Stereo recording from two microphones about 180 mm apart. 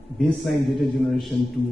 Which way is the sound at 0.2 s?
Centre (ahead or behind).